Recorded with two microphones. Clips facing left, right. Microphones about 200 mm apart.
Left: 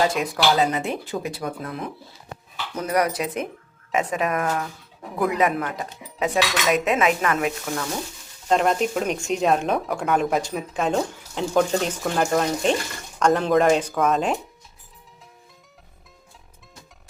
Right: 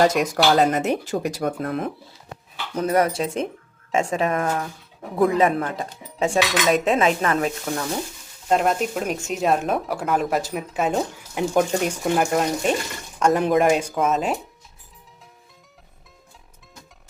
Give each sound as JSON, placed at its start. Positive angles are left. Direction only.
{"t": 0.0, "sound": "speech", "side_deg": -45}
{"t": 2.7, "sound": "cutlery", "side_deg": -25}
{"t": 7.2, "sound": "speech", "side_deg": -35}
{"t": 8.4, "sound": "speech", "side_deg": -5}